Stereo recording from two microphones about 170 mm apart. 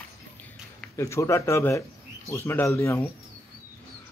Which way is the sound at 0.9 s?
15° left (ahead or behind).